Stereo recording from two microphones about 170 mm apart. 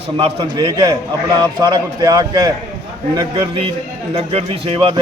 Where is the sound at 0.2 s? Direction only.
30° right (ahead or behind).